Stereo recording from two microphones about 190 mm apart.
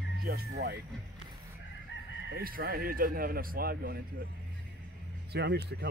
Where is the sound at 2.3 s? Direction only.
50° right (ahead or behind).